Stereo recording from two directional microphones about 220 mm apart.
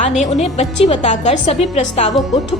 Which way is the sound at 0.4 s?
30° left (ahead or behind).